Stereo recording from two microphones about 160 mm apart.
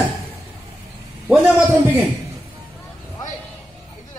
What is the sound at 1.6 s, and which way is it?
Speech, 10° left (ahead or behind).